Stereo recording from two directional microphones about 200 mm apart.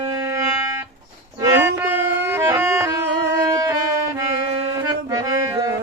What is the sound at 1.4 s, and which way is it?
Toot, 10° right (ahead or behind).